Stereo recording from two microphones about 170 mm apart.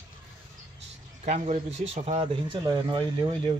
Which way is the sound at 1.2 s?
40° right (ahead or behind).